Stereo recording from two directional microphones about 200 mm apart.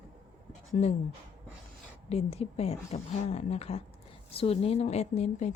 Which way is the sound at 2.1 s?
30° left (ahead or behind).